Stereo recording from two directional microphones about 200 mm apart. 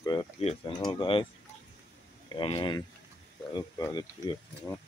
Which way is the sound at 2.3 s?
25° left (ahead or behind).